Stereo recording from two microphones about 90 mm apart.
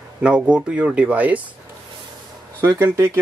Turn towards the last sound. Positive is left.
turn(degrees=-30)  # may be behind; listen again after turning